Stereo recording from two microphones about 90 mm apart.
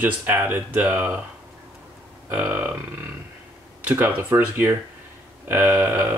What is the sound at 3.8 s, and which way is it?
Speech, 20° right (ahead or behind).